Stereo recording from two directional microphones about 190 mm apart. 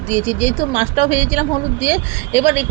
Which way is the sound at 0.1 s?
10° right (ahead or behind).